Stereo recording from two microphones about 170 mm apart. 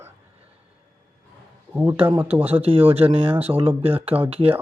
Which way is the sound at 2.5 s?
35° right (ahead or behind).